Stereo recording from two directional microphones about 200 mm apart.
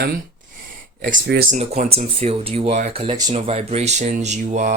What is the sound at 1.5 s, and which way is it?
Speech, 35° right (ahead or behind).